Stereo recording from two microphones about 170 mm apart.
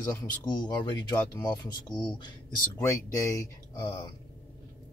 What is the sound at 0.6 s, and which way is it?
Speech, 25° left (ahead or behind).